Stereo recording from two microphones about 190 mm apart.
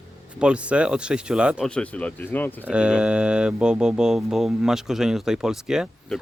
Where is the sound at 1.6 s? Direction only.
5° left (ahead or behind).